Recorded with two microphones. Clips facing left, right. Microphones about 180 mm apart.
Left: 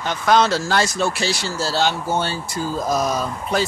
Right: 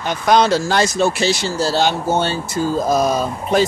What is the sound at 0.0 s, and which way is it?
Speech, 15° right (ahead or behind).